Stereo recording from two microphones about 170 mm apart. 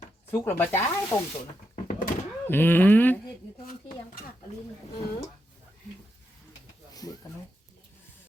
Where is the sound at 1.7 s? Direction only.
45° left (ahead or behind).